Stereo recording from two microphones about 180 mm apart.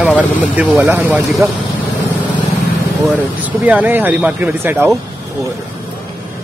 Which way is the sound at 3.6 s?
10° right (ahead or behind).